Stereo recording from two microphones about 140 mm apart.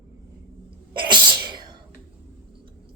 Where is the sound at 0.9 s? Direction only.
35° right (ahead or behind).